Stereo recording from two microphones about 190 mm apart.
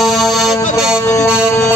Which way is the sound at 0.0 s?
Centre (ahead or behind).